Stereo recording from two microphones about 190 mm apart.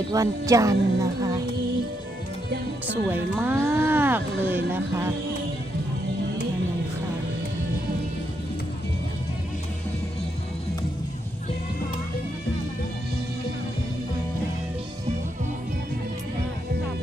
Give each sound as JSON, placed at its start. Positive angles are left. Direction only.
{"t": 0.1, "sound": "speech", "side_deg": -20}
{"t": 2.8, "sound": "speech", "side_deg": -10}